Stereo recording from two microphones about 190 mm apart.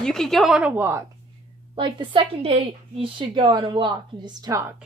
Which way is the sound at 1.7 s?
25° right (ahead or behind).